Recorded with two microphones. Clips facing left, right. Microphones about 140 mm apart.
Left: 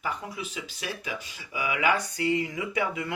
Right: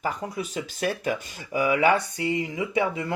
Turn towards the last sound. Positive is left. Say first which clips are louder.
# right 4 dB
turn(degrees=-30)  # may be behind; listen again after turning